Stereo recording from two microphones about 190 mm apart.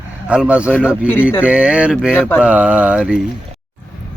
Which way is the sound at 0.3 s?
5° right (ahead or behind).